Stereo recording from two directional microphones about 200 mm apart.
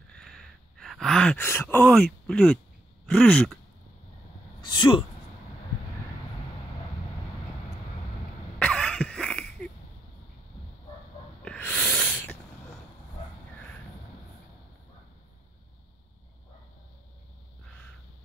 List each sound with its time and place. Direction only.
0.1 s sigh: centre (ahead or behind)
3.1 s speech: 5° left (ahead or behind)
4.6 s speech: 20° left (ahead or behind)
8.5 s cough: 5° left (ahead or behind)
11.4 s snort: 5° left (ahead or behind)